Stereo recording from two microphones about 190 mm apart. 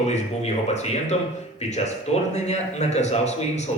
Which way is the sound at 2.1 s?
35° left (ahead or behind).